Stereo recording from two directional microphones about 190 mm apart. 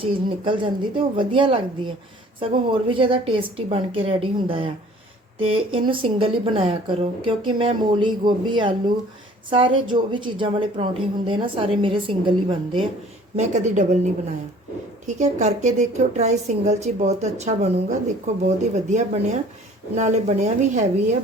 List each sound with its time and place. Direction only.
0.0 s a woman's voice: 25° right (ahead or behind)
13.3 s a woman's voice: 35° right (ahead or behind)
15.0 s a woman's voice: 40° right (ahead or behind)